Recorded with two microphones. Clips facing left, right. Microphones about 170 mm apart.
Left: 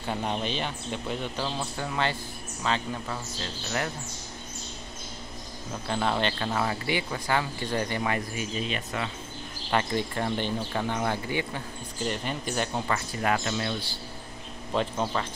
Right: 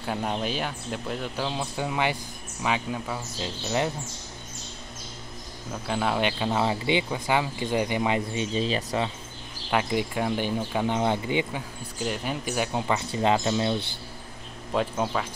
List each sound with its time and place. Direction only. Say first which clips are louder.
0.0 s a man's voice: right 1 dB; 5° right (ahead or behind)
5.7 s speech: right 1 dB; 5° right (ahead or behind); by 9.1 s 30° right (ahead or behind)
9.7 s speech: right 2 dB; 10° right (ahead or behind)
12.0 s speech: right 1 dB; 5° right (ahead or behind); by 13.7 s 20° right (ahead or behind)
14.7 s a man's voice: right 2 dB; 5° right (ahead or behind)